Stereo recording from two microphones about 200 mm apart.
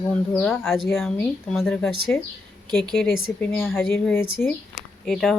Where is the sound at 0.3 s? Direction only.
Centre (ahead or behind).